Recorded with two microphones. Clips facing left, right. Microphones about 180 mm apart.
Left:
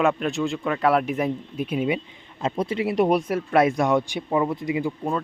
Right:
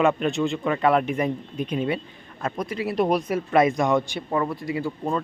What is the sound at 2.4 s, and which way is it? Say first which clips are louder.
Speech: left 3 dB; 25° left (ahead or behind).